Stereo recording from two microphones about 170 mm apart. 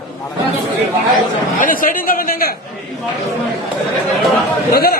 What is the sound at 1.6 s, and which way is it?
Speech, 55° left (ahead or behind).